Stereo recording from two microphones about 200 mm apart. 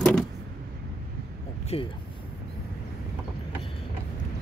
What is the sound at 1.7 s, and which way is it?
Speech, 30° left (ahead or behind).